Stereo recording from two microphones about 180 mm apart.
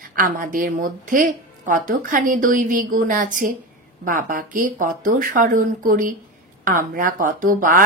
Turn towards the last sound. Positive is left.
turn(degrees=-50)  # may be behind; listen again after turning